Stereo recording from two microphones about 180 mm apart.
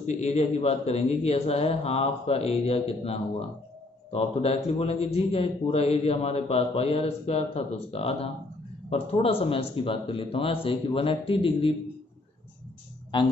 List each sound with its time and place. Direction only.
0.0 s a man's voice: 35° left (ahead or behind)
13.1 s speech: 25° left (ahead or behind)